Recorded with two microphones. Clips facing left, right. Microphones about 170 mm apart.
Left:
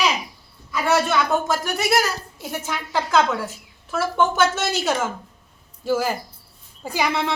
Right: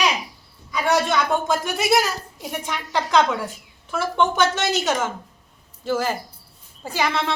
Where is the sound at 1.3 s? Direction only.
Centre (ahead or behind).